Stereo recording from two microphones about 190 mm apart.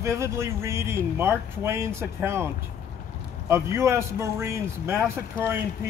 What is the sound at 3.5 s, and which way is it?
Speech, 15° right (ahead or behind).